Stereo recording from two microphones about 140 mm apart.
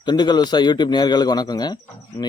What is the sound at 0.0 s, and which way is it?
A man's voice, 30° left (ahead or behind).